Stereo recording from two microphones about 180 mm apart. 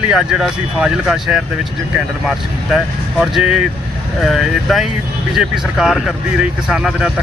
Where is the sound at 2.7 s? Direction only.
Centre (ahead or behind).